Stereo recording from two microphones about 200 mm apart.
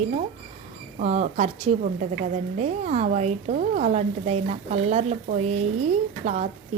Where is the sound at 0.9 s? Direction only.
35° right (ahead or behind).